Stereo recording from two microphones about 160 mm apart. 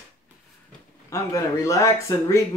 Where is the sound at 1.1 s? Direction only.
20° left (ahead or behind).